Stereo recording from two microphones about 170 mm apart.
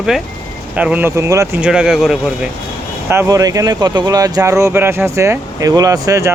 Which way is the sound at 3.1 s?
15° right (ahead or behind).